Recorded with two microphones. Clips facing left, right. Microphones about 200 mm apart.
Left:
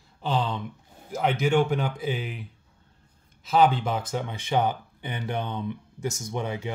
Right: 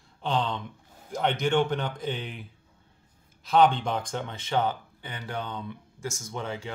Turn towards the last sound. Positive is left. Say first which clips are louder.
# left 4 dB
turn(degrees=15)  # may be behind; listen again after turning